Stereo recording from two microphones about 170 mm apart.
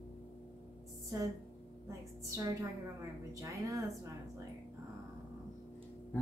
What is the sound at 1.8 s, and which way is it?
A woman's voice, 20° right (ahead or behind).